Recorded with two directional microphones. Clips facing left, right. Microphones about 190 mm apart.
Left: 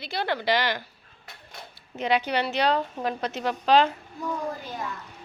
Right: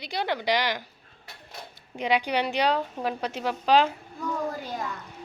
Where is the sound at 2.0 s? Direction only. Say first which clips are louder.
Even; 10° right (ahead or behind).